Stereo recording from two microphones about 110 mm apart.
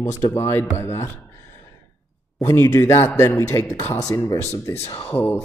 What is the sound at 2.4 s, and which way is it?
Speech, 30° left (ahead or behind).